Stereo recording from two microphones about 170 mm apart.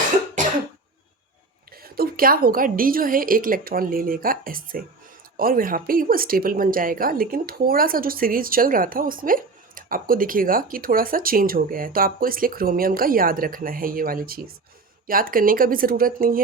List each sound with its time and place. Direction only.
1.7 s a woman's voice: 60° right (ahead or behind)